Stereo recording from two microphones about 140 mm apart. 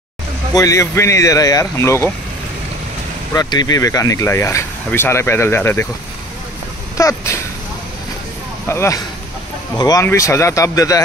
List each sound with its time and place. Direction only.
0.6 s speech: 25° left (ahead or behind)
3.3 s speech: 30° left (ahead or behind)
7.0 s speech: 20° left (ahead or behind)
8.6 s speech: 20° left (ahead or behind)